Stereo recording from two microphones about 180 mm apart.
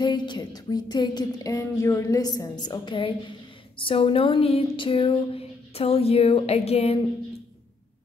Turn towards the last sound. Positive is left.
turn(degrees=35)  # may be behind; listen again after turning